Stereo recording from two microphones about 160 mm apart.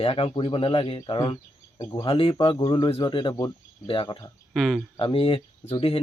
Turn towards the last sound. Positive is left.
turn(degrees=35)  # may be behind; listen again after turning